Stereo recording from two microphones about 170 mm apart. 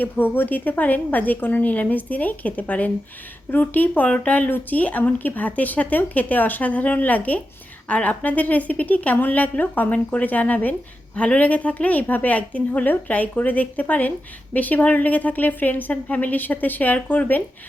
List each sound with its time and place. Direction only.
0.0 s a woman's voice: 10° left (ahead or behind)